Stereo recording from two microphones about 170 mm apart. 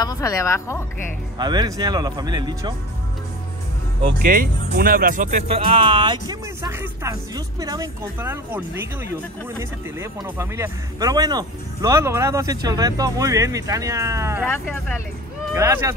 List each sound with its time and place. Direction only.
0.0 s a woman's voice: 20° left (ahead or behind)
1.4 s speech: 25° right (ahead or behind)
4.2 s speech: 55° right (ahead or behind)
5.6 s speech: 30° right (ahead or behind); by 14.5 s 15° right (ahead or behind)
14.5 s speech: 15° left (ahead or behind)
15.5 s speech: 15° right (ahead or behind)